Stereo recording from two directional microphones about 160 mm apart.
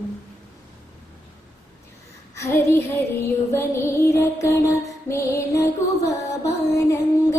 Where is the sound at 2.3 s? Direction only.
15° left (ahead or behind).